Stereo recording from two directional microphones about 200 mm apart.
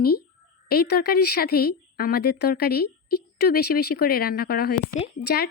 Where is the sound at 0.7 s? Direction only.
50° left (ahead or behind).